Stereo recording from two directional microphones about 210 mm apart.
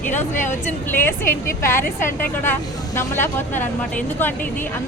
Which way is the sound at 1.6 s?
10° left (ahead or behind).